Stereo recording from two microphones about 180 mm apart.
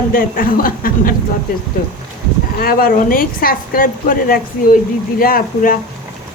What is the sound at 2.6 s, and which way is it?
A woman's voice, 55° left (ahead or behind).